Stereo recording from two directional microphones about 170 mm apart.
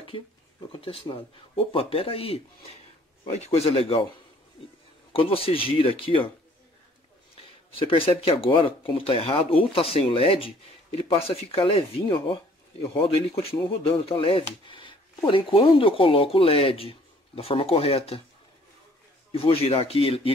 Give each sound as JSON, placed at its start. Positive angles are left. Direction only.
{"t": 0.0, "sound": "speech", "side_deg": 30}
{"t": 5.1, "sound": "speech", "side_deg": 35}
{"t": 7.8, "sound": "speech", "side_deg": 30}
{"t": 19.3, "sound": "speech", "side_deg": 35}